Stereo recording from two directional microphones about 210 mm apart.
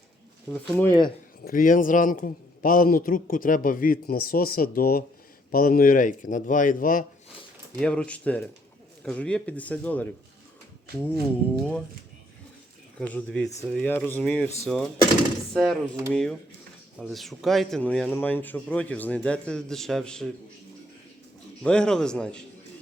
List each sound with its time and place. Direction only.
0.8 s speech: 10° left (ahead or behind)
1.5 s a man's voice: 40° left (ahead or behind)
7.8 s a man's voice: 5° left (ahead or behind)
13.0 s a man's voice: 5° left (ahead or behind)
21.6 s a man's voice: 5° left (ahead or behind)